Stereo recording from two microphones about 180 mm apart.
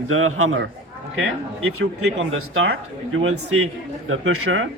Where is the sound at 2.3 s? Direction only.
90° right.